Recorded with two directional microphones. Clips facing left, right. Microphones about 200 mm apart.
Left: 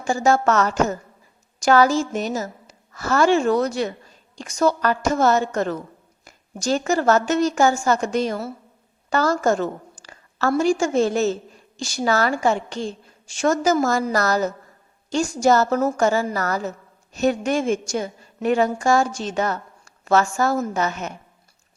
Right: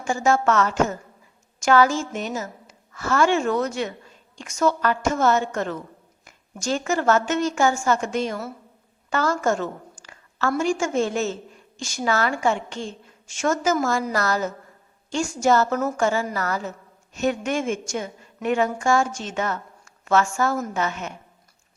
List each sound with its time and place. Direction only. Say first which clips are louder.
0.0 s a woman's voice: left 2 dB; 35° left (ahead or behind)